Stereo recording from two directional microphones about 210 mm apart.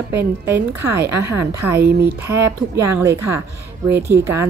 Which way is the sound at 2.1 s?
10° right (ahead or behind).